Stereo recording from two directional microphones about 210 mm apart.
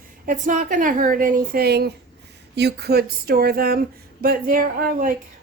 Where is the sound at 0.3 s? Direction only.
40° right (ahead or behind).